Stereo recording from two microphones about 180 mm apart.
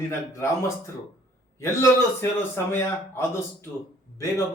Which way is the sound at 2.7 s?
15° left (ahead or behind).